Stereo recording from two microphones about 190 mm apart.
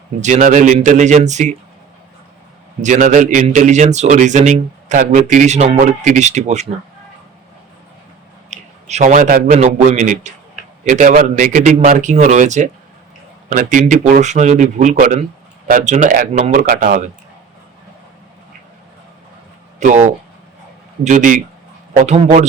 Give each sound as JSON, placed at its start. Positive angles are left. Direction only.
{"t": 0.2, "sound": "a man's voice", "side_deg": -40}
{"t": 2.8, "sound": "a man's voice", "side_deg": -40}
{"t": 8.4, "sound": "a man's voice", "side_deg": -40}
{"t": 19.8, "sound": "a man's voice", "side_deg": -40}
{"t": 21.0, "sound": "a man's voice", "side_deg": -40}